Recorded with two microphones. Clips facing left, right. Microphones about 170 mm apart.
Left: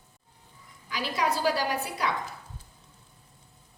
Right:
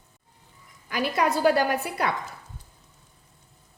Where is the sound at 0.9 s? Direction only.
55° right (ahead or behind).